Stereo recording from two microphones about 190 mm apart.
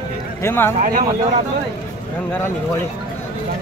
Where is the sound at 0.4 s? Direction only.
15° left (ahead or behind).